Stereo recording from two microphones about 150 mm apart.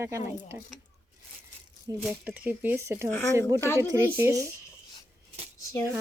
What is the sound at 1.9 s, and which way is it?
Speech, 25° right (ahead or behind).